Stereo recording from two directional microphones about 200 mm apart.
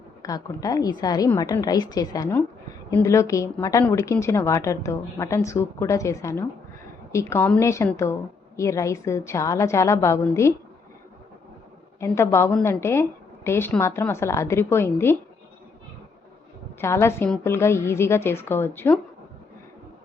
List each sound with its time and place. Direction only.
0.2 s a woman's voice: 15° left (ahead or behind)
11.9 s a woman's voice: 15° left (ahead or behind)
16.8 s a woman's voice: 15° left (ahead or behind)